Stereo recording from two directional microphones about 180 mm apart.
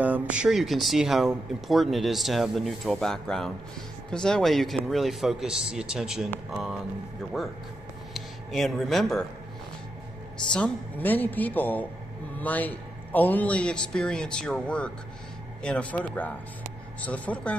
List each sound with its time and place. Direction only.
0.0 s speech: 10° right (ahead or behind)
8.1 s speech: centre (ahead or behind)
10.5 s a man's voice: 5° left (ahead or behind)